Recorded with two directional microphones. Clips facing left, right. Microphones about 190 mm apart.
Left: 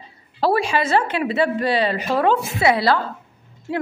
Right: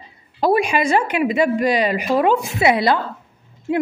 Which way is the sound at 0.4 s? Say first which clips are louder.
Right 2 dB; 15° right (ahead or behind).